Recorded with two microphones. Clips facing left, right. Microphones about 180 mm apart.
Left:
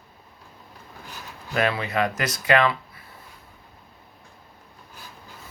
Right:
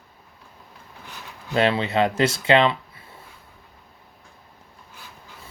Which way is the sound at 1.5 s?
25° right (ahead or behind).